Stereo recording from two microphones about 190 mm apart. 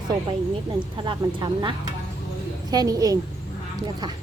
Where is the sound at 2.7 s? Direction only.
20° right (ahead or behind).